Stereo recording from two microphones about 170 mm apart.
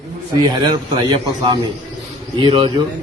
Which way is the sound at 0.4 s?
25° right (ahead or behind).